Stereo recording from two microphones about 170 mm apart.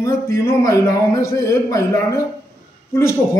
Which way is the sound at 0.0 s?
15° left (ahead or behind).